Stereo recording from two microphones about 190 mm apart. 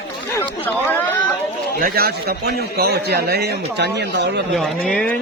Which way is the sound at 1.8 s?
55° right (ahead or behind).